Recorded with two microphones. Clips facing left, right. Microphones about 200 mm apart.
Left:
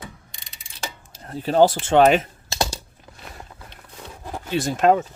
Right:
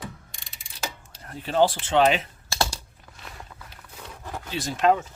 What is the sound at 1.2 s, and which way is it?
Speech, 35° left (ahead or behind).